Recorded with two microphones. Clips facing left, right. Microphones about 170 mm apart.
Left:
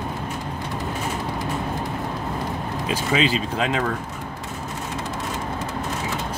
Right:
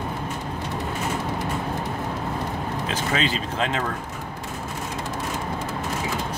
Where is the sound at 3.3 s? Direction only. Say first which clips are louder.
Left 2 dB; 30° right (ahead or behind).